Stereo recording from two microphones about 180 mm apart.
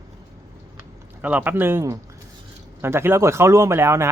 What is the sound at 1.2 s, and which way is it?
Speech, 10° right (ahead or behind).